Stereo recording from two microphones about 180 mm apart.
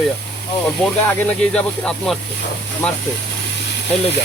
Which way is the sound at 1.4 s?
5° left (ahead or behind).